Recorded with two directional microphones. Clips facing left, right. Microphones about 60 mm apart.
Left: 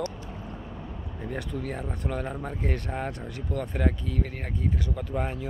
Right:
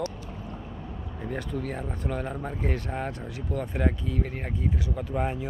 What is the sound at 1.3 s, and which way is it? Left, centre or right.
Speech, centre.